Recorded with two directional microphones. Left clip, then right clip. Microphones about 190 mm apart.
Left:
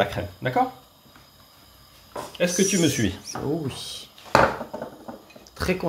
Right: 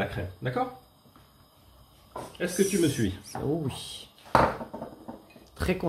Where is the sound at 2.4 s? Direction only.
5° right (ahead or behind).